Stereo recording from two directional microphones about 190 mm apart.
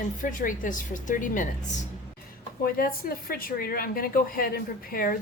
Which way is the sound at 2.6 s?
50° left (ahead or behind).